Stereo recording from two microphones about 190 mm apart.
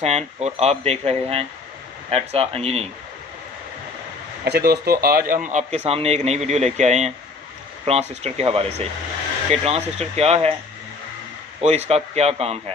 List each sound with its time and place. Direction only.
0.0 s a man's voice: 35° right (ahead or behind)
4.5 s a man's voice: 55° right (ahead or behind); by 10.5 s 35° right (ahead or behind)
11.6 s a man's voice: 35° right (ahead or behind)